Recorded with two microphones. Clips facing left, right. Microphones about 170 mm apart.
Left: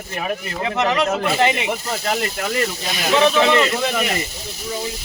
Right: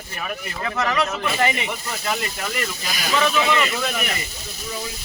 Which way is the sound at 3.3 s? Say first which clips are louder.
Left 5 dB; 70° left (ahead or behind).